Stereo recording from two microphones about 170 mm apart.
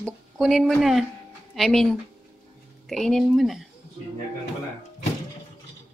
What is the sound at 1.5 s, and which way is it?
Speech, centre (ahead or behind).